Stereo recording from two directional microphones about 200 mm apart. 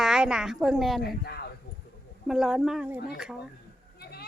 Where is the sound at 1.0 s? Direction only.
55° left (ahead or behind).